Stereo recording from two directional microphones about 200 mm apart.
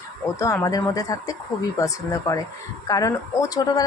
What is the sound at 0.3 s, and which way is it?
Speech, 15° left (ahead or behind).